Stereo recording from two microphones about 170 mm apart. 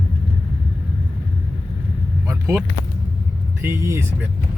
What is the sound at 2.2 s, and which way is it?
Speech, 15° right (ahead or behind).